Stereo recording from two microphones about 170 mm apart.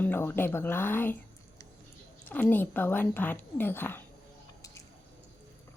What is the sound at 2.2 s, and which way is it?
Speech, 10° left (ahead or behind).